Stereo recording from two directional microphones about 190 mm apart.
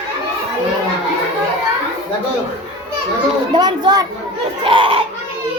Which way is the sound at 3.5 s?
25° right (ahead or behind).